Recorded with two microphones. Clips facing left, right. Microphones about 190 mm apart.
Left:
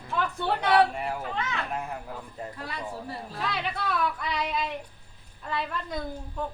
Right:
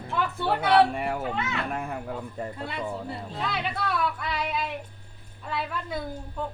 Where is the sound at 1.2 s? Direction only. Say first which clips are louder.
Right 2 dB; 5° right (ahead or behind).